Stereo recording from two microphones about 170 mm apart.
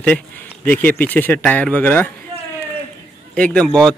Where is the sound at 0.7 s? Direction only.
10° left (ahead or behind).